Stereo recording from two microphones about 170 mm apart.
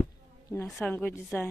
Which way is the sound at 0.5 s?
15° left (ahead or behind).